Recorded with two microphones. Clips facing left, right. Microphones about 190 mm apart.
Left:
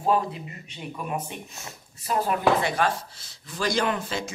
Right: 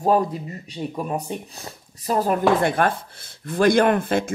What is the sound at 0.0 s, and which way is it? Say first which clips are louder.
Speech: right 5 dB; 40° right (ahead or behind).